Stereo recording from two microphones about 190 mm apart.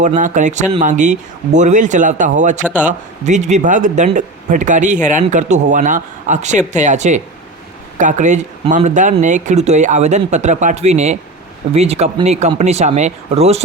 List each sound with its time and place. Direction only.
0.2 s speech: 40° right (ahead or behind)